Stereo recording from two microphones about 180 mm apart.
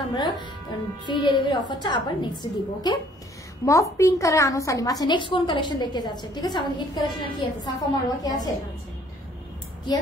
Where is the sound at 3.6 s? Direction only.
15° left (ahead or behind).